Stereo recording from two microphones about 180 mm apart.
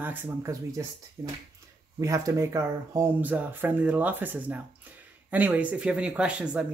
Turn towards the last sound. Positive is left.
turn(degrees=-5)  # may be behind; listen again after turning